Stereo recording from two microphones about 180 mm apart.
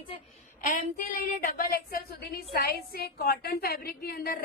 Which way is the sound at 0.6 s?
50° left (ahead or behind).